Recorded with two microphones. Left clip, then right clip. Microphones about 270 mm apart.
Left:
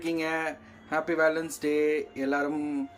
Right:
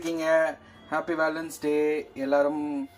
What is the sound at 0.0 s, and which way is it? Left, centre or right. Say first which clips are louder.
Speech: right 6 dB; centre.